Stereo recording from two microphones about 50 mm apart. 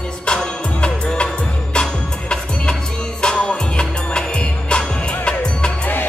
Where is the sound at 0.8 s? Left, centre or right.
Left.